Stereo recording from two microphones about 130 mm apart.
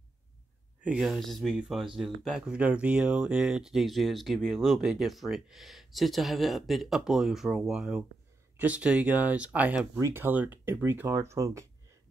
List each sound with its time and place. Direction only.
0.8 s speech: 5° right (ahead or behind)
9.9 s speech: 20° right (ahead or behind)